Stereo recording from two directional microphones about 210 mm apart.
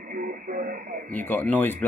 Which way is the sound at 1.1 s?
10° left (ahead or behind).